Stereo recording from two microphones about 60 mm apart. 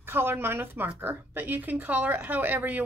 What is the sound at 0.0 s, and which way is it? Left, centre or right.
Speech, right.